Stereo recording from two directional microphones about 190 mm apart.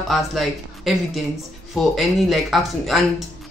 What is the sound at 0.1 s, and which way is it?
A woman's voice, centre (ahead or behind).